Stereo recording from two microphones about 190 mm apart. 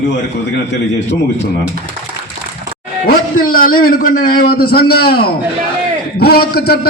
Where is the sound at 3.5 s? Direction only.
50° left (ahead or behind).